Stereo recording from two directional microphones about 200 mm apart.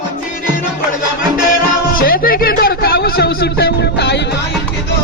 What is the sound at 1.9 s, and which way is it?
Music, 45° left (ahead or behind).